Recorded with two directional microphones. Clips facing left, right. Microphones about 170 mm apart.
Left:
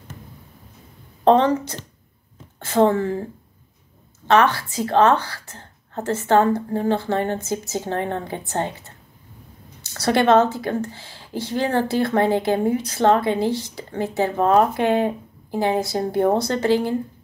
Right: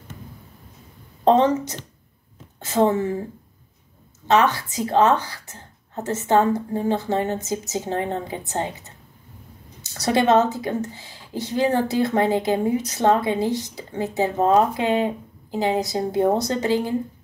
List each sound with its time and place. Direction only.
1.2 s speech: 20° right (ahead or behind)
2.6 s speech: 20° right (ahead or behind)
4.3 s speech: 20° right (ahead or behind)
9.8 s speech: 20° right (ahead or behind)